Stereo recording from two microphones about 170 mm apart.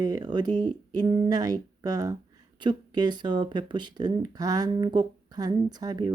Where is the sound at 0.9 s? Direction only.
20° right (ahead or behind).